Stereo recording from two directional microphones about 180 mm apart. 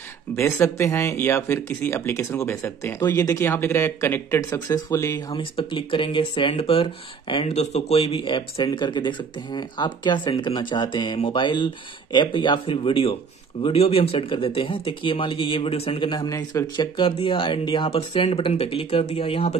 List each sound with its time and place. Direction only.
0.4 s speech: 15° left (ahead or behind)
5.3 s speech: 30° left (ahead or behind)